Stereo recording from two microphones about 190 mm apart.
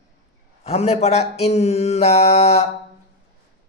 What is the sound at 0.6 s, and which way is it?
Speech, 35° left (ahead or behind).